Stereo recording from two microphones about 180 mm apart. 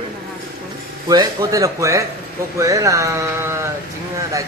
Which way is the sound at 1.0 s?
20° right (ahead or behind).